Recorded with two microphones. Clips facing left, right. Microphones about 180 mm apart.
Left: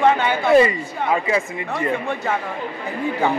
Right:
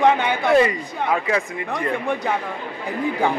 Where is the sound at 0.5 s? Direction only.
5° left (ahead or behind).